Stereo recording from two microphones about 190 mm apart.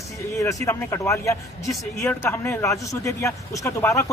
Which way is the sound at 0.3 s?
15° left (ahead or behind).